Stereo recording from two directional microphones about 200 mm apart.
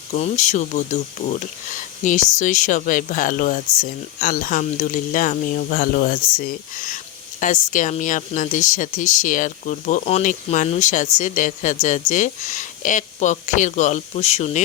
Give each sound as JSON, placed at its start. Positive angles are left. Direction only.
{"t": 0.1, "sound": "speech", "side_deg": 35}